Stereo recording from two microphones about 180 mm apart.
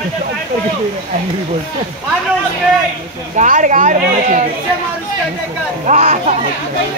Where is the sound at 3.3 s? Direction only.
45° right (ahead or behind).